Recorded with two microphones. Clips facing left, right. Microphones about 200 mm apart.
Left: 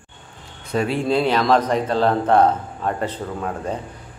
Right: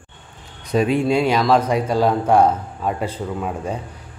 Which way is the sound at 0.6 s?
15° right (ahead or behind).